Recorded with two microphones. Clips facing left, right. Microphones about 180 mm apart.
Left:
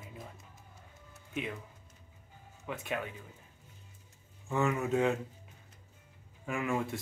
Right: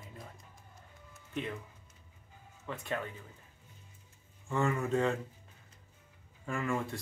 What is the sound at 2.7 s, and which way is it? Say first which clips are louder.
Speech: left 1 dB; 10° left (ahead or behind).